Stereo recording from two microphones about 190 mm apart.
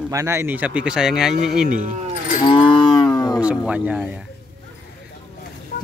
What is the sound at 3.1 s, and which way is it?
Music, 20° left (ahead or behind).